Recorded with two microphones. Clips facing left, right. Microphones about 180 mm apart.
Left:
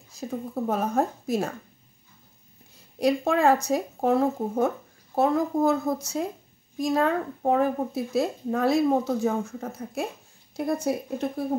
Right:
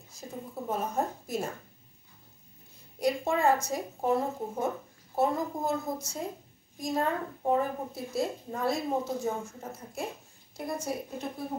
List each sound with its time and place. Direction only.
0.1 s speech: 75° left (ahead or behind)
3.0 s a woman's voice: 80° left; by 11.2 s 65° left (ahead or behind)